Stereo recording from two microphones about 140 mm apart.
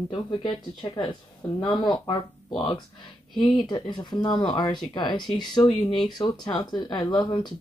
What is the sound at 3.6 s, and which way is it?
Speech, 30° left (ahead or behind).